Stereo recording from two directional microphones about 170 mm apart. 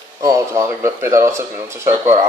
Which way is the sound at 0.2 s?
20° right (ahead or behind).